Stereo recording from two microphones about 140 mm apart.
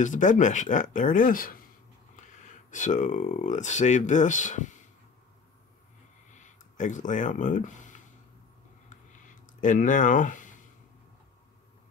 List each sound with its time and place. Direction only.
0.0 s speech: 65° left (ahead or behind); by 1.6 s 85° left
2.1 s speech: 60° left (ahead or behind)
6.3 s speech: 60° left (ahead or behind)
9.6 s speech: 65° left (ahead or behind)